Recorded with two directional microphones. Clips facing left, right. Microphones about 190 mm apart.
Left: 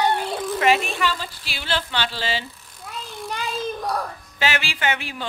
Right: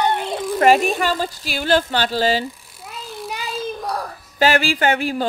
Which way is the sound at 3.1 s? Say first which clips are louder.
Right 1 dB; 5° right (ahead or behind).